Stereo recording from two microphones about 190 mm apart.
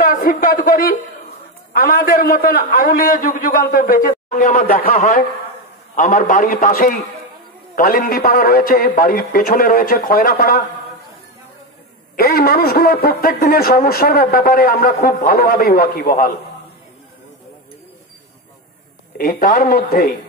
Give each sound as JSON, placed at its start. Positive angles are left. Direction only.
{"t": 0.0, "sound": "a man's voice", "side_deg": 50}
{"t": 12.2, "sound": "a man's voice", "side_deg": 50}
{"t": 19.1, "sound": "a man's voice", "side_deg": 50}